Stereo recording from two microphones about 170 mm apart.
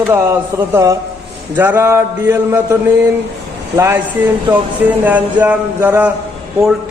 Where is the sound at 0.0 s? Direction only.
15° right (ahead or behind).